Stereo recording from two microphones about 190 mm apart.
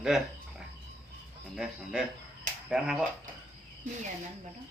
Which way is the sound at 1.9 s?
5° right (ahead or behind).